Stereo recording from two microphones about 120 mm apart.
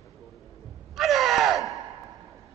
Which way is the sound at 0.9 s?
Centre (ahead or behind).